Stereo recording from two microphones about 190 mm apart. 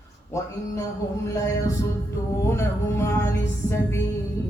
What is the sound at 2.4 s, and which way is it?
Music, 15° left (ahead or behind).